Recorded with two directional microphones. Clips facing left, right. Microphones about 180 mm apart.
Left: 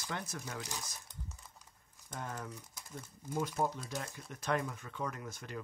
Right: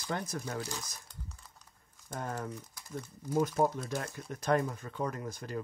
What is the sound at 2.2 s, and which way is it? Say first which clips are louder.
Speech: right 5 dB; 45° right (ahead or behind).